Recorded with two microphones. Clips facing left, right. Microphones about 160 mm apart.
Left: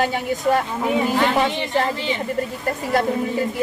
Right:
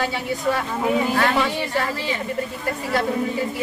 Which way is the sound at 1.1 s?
15° left (ahead or behind).